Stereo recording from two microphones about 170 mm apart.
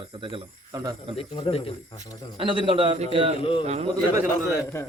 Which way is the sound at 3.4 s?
35° left (ahead or behind).